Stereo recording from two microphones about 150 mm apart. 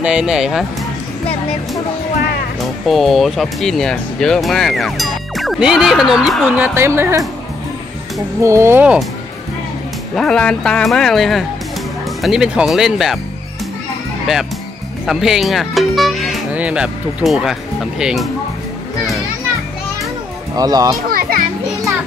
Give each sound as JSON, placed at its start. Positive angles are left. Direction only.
{"t": 0.0, "sound": "speech", "side_deg": -5}
{"t": 2.9, "sound": "speech", "side_deg": 0}
{"t": 6.6, "sound": "a woman's voice", "side_deg": -15}
{"t": 8.4, "sound": "a woman's voice", "side_deg": -20}
{"t": 10.1, "sound": "speech", "side_deg": 5}
{"t": 15.0, "sound": "speech", "side_deg": -5}
{"t": 20.5, "sound": "speech", "side_deg": -25}
{"t": 21.1, "sound": "children playing", "side_deg": -75}